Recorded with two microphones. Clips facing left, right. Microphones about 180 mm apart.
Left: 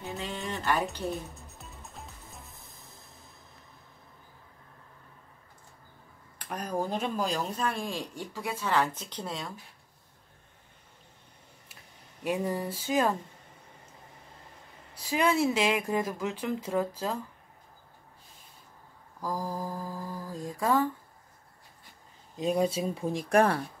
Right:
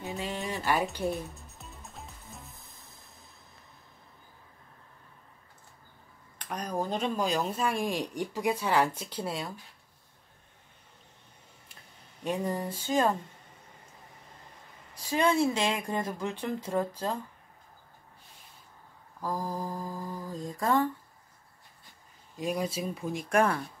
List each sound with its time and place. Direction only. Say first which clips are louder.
0.0 s music: right 1 dB; 5° right (ahead or behind)
6.3 s a sound: even; 5° left (ahead or behind)
6.9 s speech: right 1 dB; 5° left (ahead or behind)
11.7 s speech: left 1 dB; 5° left (ahead or behind)
15.0 s speech: even; 5° left (ahead or behind)
19.3 s mantra: even; 5° left (ahead or behind)
22.4 s speech: left 4 dB; 30° left (ahead or behind)